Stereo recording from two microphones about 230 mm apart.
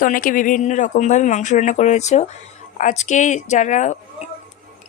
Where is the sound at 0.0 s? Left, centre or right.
Left.